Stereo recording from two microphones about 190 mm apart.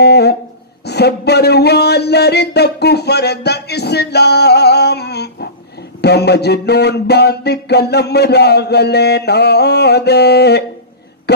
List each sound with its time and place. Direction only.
0.0 s speech: 60° left (ahead or behind)